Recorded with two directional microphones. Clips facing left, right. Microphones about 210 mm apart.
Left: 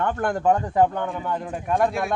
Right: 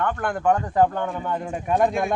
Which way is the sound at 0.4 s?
15° left (ahead or behind).